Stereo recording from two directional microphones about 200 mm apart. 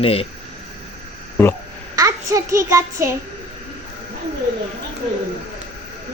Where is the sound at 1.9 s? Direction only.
15° right (ahead or behind).